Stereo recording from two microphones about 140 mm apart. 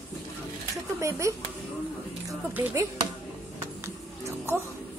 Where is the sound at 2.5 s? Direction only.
15° right (ahead or behind).